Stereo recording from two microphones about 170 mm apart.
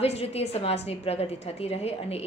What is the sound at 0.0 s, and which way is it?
A woman's voice, 40° left (ahead or behind).